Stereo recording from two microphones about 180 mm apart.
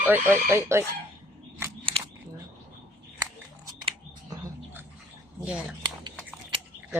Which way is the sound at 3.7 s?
20° right (ahead or behind).